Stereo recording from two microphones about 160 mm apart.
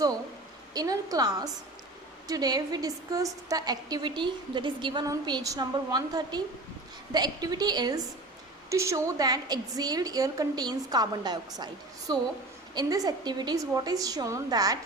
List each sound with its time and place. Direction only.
0.7 s a woman's voice: 25° right (ahead or behind)